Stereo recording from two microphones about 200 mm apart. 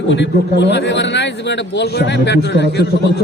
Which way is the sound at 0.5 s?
60° left (ahead or behind).